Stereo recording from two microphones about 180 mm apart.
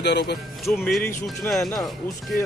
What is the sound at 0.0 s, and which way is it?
Speech, 70° left (ahead or behind).